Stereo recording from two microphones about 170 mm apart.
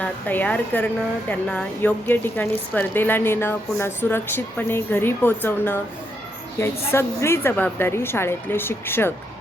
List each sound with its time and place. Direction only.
0.0 s a woman's voice: 10° left (ahead or behind)